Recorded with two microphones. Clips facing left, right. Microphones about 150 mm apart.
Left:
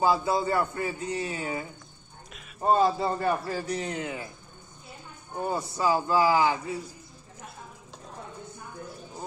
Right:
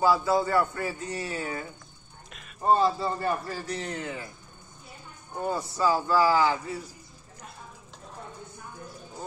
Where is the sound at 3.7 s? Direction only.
20° left (ahead or behind).